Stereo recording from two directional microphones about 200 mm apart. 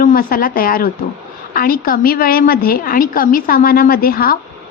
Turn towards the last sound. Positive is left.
turn(degrees=45)  # may be behind; listen again after turning